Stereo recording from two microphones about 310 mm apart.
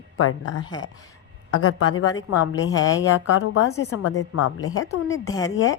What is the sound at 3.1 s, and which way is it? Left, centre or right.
A woman's voice, left.